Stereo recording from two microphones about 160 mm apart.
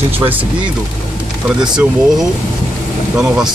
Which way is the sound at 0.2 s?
10° right (ahead or behind).